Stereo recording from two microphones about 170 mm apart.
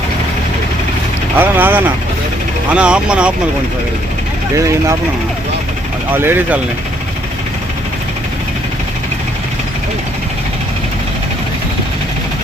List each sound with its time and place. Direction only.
1.4 s speech: 10° right (ahead or behind)
4.5 s speech: 20° right (ahead or behind)
6.1 s speech: 10° right (ahead or behind)